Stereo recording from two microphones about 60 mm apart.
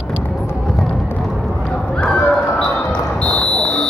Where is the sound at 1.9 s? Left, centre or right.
Centre.